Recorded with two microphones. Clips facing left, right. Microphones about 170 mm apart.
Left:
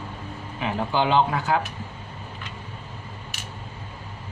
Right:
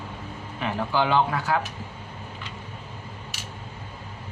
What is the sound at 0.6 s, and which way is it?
Speech, 20° left (ahead or behind).